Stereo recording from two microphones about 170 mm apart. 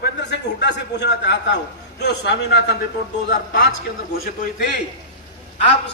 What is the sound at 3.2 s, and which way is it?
Speech, 65° left (ahead or behind).